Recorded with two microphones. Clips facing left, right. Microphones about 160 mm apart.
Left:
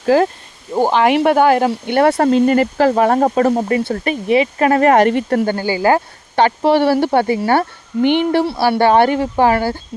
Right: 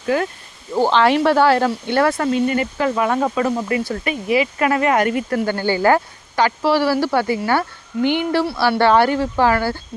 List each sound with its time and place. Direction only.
0.0 s speech: 35° left (ahead or behind)
0.8 s speech: 15° left (ahead or behind)
2.2 s speech: 40° left (ahead or behind)
5.5 s a woman's voice: 15° left (ahead or behind)